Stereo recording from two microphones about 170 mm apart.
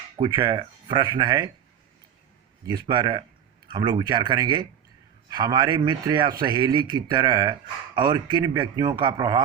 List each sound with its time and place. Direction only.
0.2 s a man's voice: 30° right (ahead or behind)
2.7 s a man's voice: 25° right (ahead or behind)